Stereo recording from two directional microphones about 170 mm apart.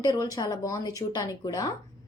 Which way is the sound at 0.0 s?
20° left (ahead or behind).